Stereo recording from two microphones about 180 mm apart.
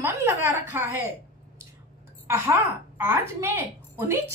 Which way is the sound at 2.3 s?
15° right (ahead or behind).